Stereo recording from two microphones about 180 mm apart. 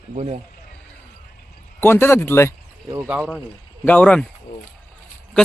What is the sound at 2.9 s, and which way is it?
Speech, 10° right (ahead or behind).